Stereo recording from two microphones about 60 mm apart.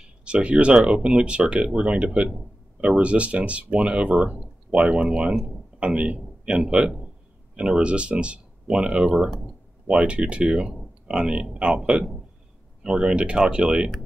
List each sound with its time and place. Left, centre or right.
0.0 s speech: centre